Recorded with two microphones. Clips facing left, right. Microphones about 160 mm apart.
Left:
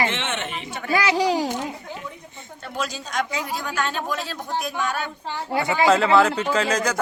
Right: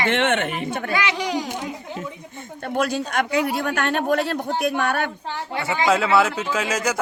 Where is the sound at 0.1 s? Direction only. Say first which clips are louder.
Right 8 dB; 60° right (ahead or behind).